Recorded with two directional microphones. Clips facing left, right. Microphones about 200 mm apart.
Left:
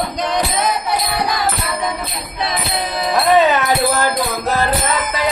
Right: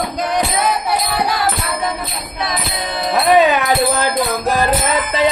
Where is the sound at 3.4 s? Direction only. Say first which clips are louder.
Right 1 dB; 15° right (ahead or behind).